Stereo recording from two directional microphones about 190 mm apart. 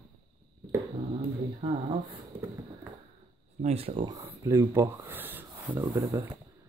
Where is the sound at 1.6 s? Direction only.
30° right (ahead or behind).